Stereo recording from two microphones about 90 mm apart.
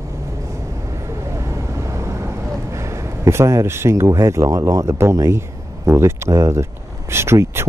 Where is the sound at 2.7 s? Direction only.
35° right (ahead or behind).